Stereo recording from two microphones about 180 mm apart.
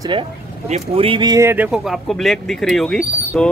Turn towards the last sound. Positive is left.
turn(degrees=5)  # may be behind; listen again after turning